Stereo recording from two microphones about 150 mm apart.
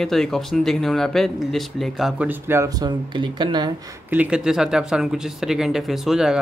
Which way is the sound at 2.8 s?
30° right (ahead or behind).